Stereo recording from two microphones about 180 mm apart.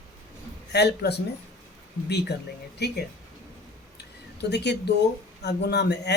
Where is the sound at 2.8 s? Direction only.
65° left (ahead or behind).